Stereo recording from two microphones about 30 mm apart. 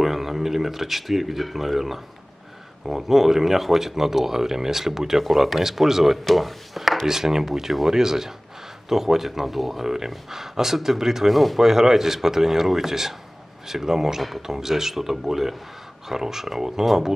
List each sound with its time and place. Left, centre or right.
0.0 s speech: centre
6.2 s a sound: centre
7.1 s speech: centre
9.8 s speech: centre